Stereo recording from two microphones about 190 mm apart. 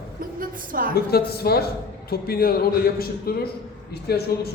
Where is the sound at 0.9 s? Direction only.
55° left (ahead or behind).